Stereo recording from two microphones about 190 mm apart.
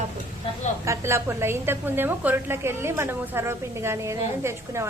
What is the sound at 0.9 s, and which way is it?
Speech, 15° right (ahead or behind).